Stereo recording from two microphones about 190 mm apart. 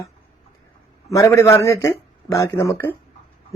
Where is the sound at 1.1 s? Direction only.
15° left (ahead or behind).